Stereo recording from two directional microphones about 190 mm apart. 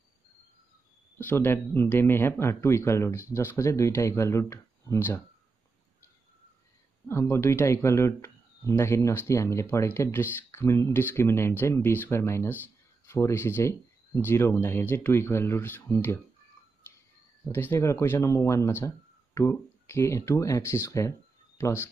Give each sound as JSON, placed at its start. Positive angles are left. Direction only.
{"t": 1.1, "sound": "speech", "side_deg": 10}
{"t": 7.1, "sound": "speech", "side_deg": 15}
{"t": 17.5, "sound": "speech", "side_deg": 10}